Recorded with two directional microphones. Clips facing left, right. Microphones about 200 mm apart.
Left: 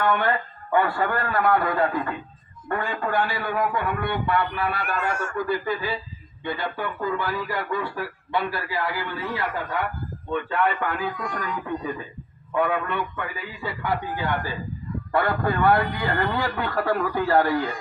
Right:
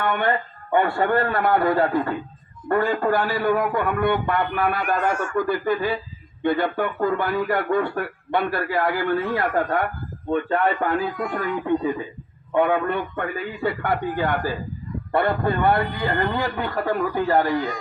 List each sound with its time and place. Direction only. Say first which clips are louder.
0.0 s a man's voice: even; 20° right (ahead or behind); by 10.9 s 40° right (ahead or behind)
11.3 s a man's voice: right 7 dB; 25° right (ahead or behind)
13.1 s a man's voice: right 6 dB; 55° right (ahead or behind)
15.1 s a man's voice: right 2 dB; 25° right (ahead or behind)